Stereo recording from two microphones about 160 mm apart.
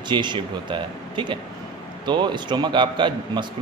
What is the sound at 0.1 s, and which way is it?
Speech, 30° right (ahead or behind).